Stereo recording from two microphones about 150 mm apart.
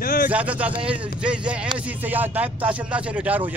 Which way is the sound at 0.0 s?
75° left (ahead or behind).